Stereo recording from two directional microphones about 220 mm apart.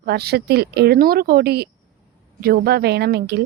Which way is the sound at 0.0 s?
45° right (ahead or behind).